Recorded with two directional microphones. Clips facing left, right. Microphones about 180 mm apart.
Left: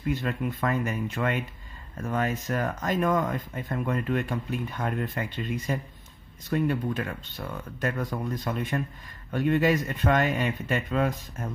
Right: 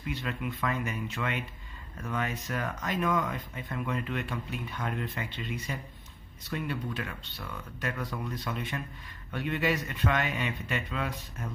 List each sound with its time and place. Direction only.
0.1 s speech: 45° left (ahead or behind)